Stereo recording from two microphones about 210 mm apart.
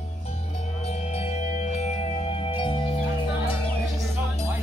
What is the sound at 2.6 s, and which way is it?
Music, 25° left (ahead or behind).